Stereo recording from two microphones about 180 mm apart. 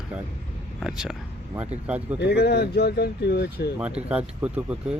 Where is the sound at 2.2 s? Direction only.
65° left (ahead or behind).